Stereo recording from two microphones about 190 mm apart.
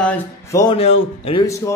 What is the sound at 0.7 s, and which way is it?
Speech, 35° left (ahead or behind).